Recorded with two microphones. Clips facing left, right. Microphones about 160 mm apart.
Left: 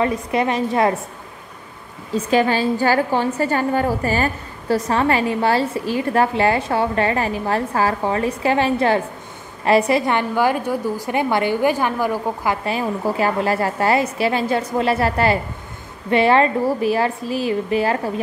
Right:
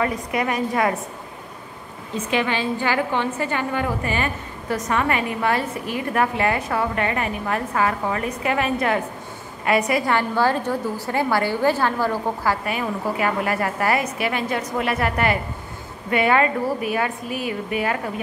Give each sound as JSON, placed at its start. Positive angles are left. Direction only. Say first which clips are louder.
{"t": 0.0, "sound": "a woman's voice", "louder": "left 4 dB", "side_deg": 25}
{"t": 2.1, "sound": "a woman's voice", "louder": "left 6 dB", "side_deg": 40}
{"t": 12.6, "sound": "a woman's voice", "louder": "left 3 dB", "side_deg": 30}